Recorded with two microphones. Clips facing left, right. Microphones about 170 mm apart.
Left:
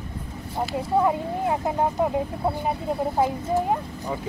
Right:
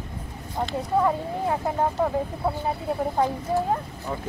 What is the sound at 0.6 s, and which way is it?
Speech, 5° left (ahead or behind).